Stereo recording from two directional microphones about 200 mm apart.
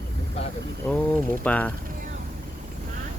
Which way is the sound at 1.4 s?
5° left (ahead or behind).